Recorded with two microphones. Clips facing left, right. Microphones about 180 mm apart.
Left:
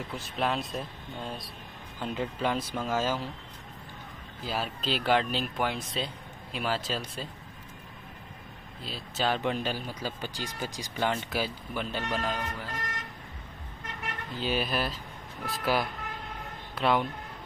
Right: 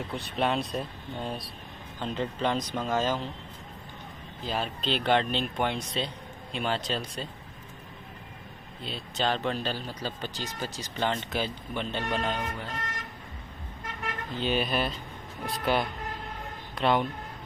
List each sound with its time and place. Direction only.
0.1 s speech: centre (ahead or behind)
4.4 s speech: 5° left (ahead or behind)
8.8 s speech: 5° left (ahead or behind)
14.4 s speech: centre (ahead or behind)